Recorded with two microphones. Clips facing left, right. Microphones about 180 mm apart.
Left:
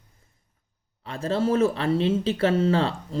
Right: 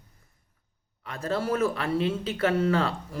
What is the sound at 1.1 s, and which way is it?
Speech, 25° left (ahead or behind).